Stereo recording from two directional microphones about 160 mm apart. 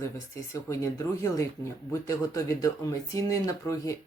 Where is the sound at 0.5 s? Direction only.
20° left (ahead or behind).